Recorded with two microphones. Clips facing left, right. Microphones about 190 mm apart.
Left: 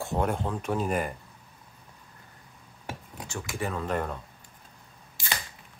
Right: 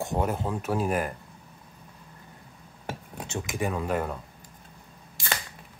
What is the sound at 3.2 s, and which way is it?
Speech, 20° right (ahead or behind).